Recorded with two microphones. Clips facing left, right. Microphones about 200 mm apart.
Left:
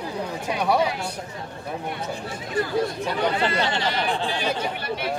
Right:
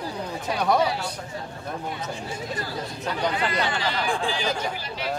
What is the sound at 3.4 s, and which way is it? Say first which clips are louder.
Speech: left 2 dB; 30° left (ahead or behind).